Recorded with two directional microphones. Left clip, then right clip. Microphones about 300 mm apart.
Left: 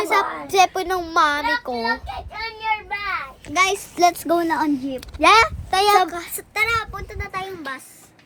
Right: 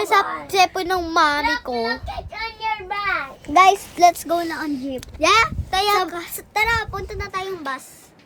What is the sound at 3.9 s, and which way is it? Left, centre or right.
Speech, centre.